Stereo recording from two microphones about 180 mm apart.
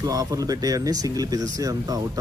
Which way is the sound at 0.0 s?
20° right (ahead or behind).